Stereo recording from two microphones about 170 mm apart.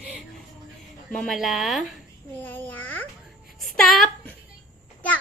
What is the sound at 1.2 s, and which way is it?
Speech, centre (ahead or behind).